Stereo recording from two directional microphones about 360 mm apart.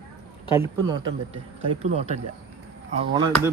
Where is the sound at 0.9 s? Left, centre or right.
Centre.